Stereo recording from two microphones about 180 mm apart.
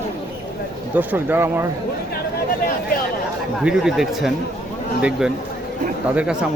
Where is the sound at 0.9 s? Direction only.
10° right (ahead or behind).